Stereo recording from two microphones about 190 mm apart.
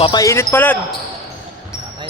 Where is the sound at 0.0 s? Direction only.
20° left (ahead or behind).